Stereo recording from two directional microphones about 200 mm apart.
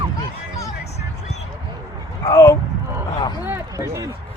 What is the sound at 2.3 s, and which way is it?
Speech, 15° left (ahead or behind).